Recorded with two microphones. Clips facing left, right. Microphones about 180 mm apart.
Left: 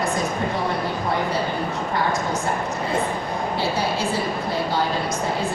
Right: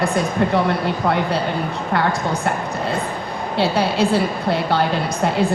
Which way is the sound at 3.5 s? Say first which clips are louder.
Right 8 dB; 65° right (ahead or behind).